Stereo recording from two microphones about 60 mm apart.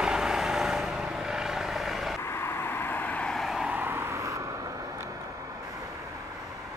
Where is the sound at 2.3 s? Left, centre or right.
Left.